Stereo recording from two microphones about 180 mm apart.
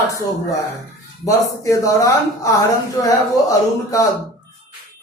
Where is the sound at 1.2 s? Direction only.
20° left (ahead or behind).